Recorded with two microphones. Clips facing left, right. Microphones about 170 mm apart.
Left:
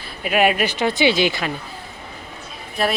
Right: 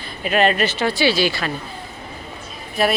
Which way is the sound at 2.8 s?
Centre (ahead or behind).